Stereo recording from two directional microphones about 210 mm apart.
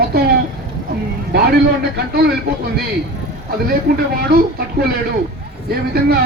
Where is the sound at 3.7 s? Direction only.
45° right (ahead or behind).